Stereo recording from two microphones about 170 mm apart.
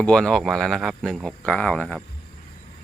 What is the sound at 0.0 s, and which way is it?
Speech, 5° left (ahead or behind).